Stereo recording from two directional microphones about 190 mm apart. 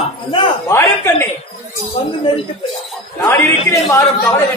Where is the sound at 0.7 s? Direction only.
15° left (ahead or behind).